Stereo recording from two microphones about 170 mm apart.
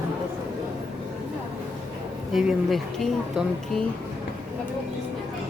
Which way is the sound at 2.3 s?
Centre (ahead or behind).